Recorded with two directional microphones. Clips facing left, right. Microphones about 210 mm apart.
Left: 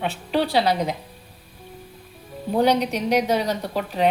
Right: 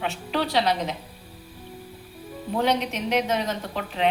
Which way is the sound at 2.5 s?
35° left (ahead or behind).